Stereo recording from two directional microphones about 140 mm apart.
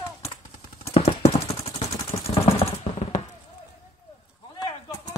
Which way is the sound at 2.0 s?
50° left (ahead or behind).